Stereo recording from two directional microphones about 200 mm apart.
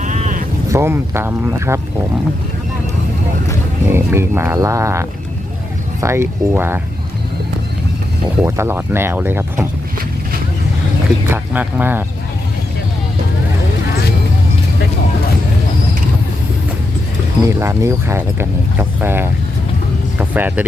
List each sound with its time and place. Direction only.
0.0 s sheep: 40° right (ahead or behind)
0.7 s speech: 10° right (ahead or behind)
3.8 s speech: 10° right (ahead or behind)
8.4 s speech: 10° right (ahead or behind)
11.3 s speech: 10° right (ahead or behind)
17.4 s speech: 15° right (ahead or behind)